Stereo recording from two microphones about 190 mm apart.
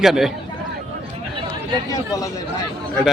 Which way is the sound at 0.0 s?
Centre (ahead or behind).